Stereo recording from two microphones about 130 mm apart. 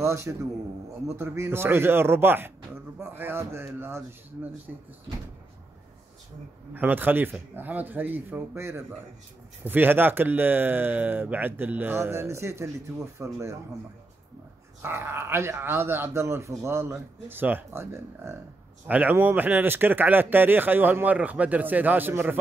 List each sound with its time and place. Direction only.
0.0 s speech: 20° right (ahead or behind)
6.7 s speech: 15° right (ahead or behind)
14.8 s speech: 20° right (ahead or behind)